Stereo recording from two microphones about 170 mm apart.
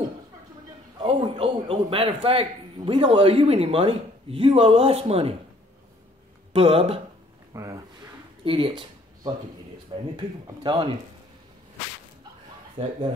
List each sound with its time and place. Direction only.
1.0 s a man's voice: 30° right (ahead or behind)
6.5 s a man's voice: 35° right (ahead or behind)
7.5 s speech: 20° right (ahead or behind)
8.5 s speech: 30° right (ahead or behind)
12.7 s a man's voice: 35° right (ahead or behind)